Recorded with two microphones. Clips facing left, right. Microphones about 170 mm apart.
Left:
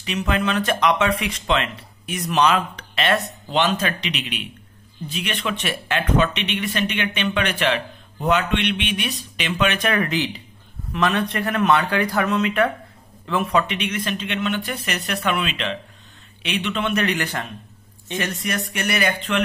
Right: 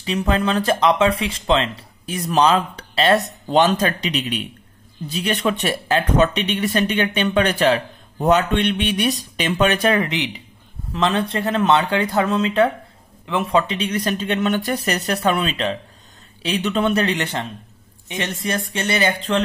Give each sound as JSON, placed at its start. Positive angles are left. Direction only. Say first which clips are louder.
{"t": 0.0, "sound": "speech", "louder": "right 3 dB", "side_deg": -30}